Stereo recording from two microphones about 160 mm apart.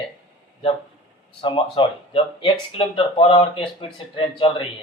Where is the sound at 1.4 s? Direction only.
30° left (ahead or behind).